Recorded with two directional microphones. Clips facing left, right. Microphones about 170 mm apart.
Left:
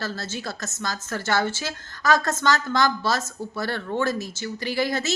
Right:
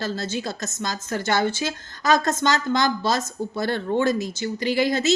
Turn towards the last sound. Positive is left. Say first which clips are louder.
# right 5 dB
turn(degrees=-20)  # may be behind; listen again after turning